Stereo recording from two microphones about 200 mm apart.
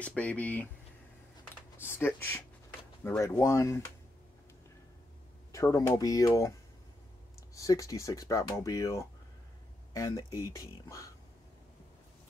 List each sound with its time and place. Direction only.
0.0 s speech: 5° left (ahead or behind)
2.0 s speech: 10° left (ahead or behind)
5.5 s speech: 15° left (ahead or behind)